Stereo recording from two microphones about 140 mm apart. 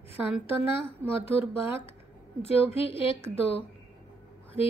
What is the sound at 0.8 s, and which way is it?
Speech, 40° left (ahead or behind).